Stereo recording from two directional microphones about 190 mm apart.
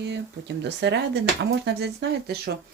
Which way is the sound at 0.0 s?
65° right (ahead or behind).